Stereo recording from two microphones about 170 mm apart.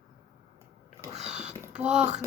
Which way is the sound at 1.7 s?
40° right (ahead or behind).